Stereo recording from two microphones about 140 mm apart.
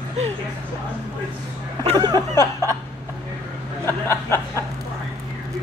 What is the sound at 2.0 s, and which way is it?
Speech, 30° right (ahead or behind).